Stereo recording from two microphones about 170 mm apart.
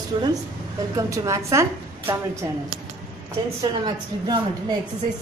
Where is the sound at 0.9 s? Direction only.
20° right (ahead or behind).